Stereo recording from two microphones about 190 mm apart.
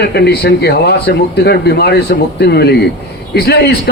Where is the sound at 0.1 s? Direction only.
60° left (ahead or behind).